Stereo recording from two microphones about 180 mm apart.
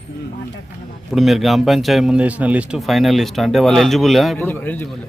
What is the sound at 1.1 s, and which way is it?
A man's voice, centre (ahead or behind).